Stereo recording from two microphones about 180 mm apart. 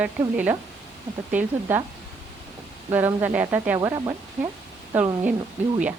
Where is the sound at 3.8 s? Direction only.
20° right (ahead or behind).